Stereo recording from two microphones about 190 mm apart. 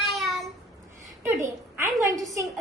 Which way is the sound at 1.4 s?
15° right (ahead or behind).